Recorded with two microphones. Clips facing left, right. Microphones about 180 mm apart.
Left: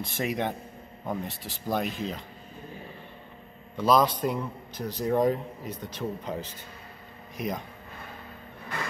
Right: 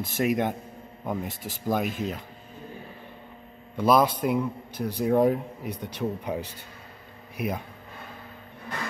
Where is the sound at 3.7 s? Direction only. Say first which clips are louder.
Right 1 dB; 10° right (ahead or behind).